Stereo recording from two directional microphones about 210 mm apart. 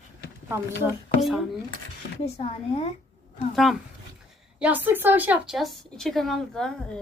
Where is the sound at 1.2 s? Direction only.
Centre (ahead or behind).